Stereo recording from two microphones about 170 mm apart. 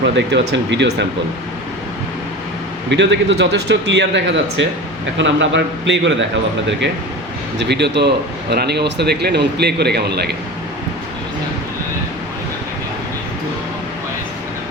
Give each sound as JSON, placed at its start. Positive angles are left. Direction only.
{"t": 0.0, "sound": "speech", "side_deg": -90}
{"t": 2.9, "sound": "speech", "side_deg": -90}
{"t": 7.6, "sound": "speech", "side_deg": -90}